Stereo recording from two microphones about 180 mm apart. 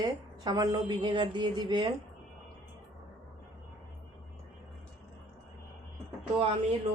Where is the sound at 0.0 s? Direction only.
20° right (ahead or behind).